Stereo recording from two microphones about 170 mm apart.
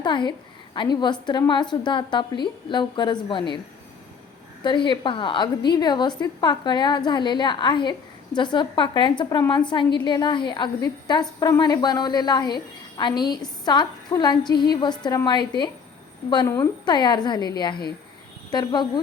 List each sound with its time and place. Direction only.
0.0 s a woman's voice: 25° left (ahead or behind)
4.6 s a woman's voice: 30° left (ahead or behind)